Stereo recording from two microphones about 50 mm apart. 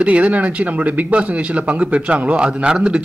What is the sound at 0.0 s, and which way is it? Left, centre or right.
Speech, right.